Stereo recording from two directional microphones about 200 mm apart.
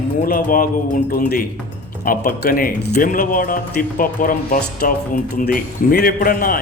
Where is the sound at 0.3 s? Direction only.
45° left (ahead or behind).